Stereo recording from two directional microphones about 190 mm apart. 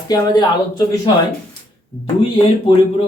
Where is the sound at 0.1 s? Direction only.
20° left (ahead or behind).